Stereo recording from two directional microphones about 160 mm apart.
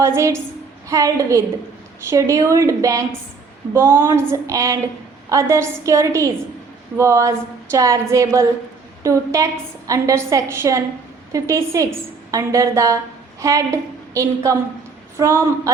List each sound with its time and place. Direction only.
0.0 s a woman's voice: 15° right (ahead or behind)